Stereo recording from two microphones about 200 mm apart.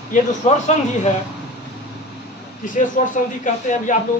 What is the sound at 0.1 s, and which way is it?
A man's voice, 35° left (ahead or behind).